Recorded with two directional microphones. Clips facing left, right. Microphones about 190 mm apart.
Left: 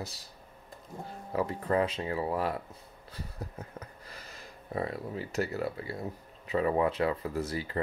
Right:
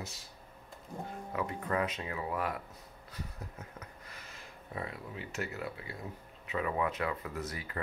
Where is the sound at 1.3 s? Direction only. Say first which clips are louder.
Left 6 dB; 30° left (ahead or behind).